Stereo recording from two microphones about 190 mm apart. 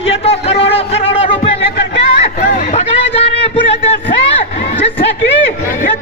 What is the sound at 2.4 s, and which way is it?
Chatter, 35° left (ahead or behind).